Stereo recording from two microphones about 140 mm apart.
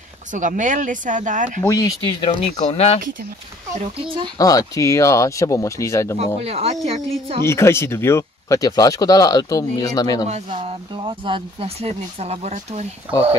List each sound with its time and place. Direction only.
0.3 s speech: 65° right (ahead or behind)
1.7 s speech: 25° left (ahead or behind)
2.1 s speech: 35° left (ahead or behind)
4.0 s speech: 35° right (ahead or behind)
4.4 s speech: 25° left (ahead or behind)
6.1 s speech: 45° right (ahead or behind)
7.4 s speech: 20° left (ahead or behind)
10.5 s speech: 35° right (ahead or behind)